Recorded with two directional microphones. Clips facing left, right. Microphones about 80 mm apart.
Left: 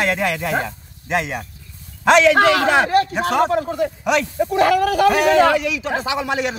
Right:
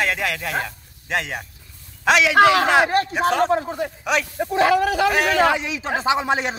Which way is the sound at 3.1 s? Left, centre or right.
Centre.